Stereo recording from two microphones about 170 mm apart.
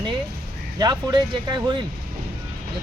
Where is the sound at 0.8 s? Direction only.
25° right (ahead or behind).